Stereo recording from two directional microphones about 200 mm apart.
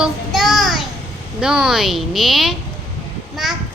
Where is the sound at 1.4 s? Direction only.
5° right (ahead or behind).